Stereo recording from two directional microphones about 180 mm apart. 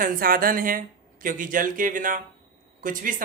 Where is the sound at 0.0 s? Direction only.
50° right (ahead or behind).